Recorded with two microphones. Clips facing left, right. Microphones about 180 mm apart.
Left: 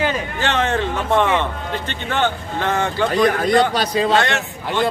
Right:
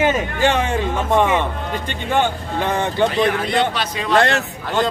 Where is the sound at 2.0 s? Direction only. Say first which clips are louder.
Right 2 dB; 10° right (ahead or behind).